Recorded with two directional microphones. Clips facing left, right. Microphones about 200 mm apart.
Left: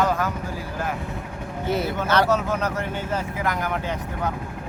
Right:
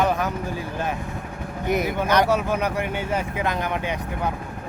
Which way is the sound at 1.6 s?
15° right (ahead or behind).